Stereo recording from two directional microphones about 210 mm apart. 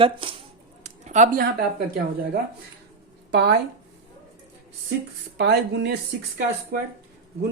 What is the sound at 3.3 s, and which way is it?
Speech, 50° right (ahead or behind).